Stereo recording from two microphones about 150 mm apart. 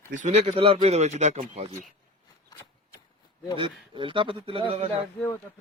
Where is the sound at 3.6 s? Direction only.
35° right (ahead or behind).